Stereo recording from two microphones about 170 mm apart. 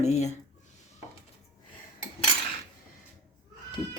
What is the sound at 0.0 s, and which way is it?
Speech, 40° left (ahead or behind).